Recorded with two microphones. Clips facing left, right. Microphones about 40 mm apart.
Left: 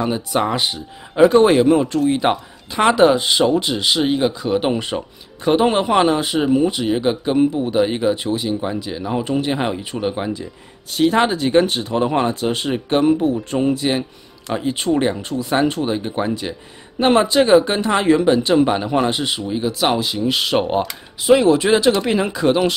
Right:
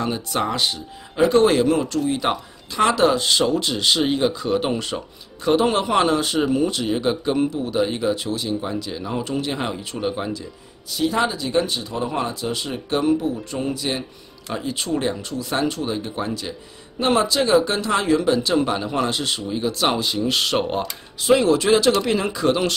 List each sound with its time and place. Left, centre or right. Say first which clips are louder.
0.0 s speech: left 4 dB; centre
4.6 s speech: left 4 dB; left
10.9 s speech: left 5 dB; left
13.7 s speech: left 6 dB; left